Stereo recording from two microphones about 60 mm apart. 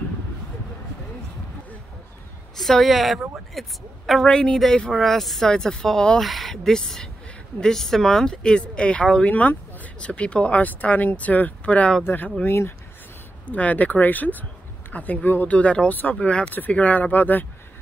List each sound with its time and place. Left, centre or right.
2.5 s a woman's voice: centre
4.3 s speech: centre
9.3 s speech: left
12.0 s speech: left
13.5 s speech: left
15.5 s speech: centre